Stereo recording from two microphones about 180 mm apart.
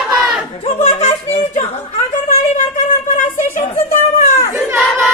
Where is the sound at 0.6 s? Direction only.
40° left (ahead or behind).